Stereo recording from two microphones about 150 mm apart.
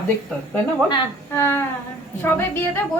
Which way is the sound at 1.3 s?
15° left (ahead or behind).